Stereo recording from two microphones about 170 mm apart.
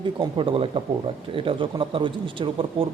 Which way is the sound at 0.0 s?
30° right (ahead or behind).